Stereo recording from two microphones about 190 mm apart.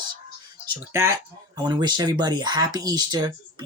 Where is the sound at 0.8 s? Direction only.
15° right (ahead or behind).